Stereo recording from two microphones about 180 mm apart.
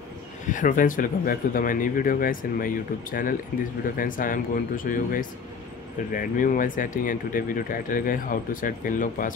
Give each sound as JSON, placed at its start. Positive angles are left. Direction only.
{"t": 0.5, "sound": "speech", "side_deg": 45}